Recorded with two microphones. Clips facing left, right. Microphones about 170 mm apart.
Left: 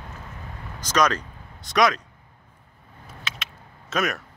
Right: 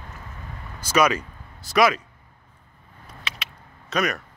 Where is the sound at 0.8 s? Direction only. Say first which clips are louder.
Right 2 dB; 10° right (ahead or behind).